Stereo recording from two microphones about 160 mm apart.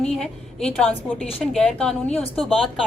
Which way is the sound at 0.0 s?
5° left (ahead or behind).